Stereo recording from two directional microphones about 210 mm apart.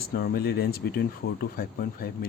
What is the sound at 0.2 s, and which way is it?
Speech, 50° left (ahead or behind).